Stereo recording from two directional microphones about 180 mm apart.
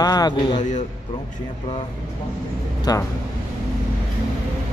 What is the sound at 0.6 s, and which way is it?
Speech, 45° left (ahead or behind).